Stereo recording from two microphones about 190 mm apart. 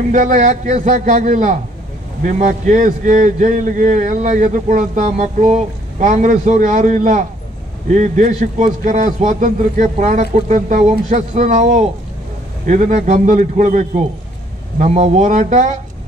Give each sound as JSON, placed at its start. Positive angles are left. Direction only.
{"t": 0.1, "sound": "a man's voice", "side_deg": -40}